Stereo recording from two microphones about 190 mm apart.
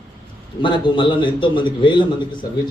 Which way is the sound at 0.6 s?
25° left (ahead or behind).